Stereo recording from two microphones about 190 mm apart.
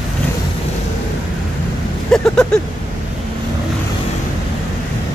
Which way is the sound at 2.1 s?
5° left (ahead or behind).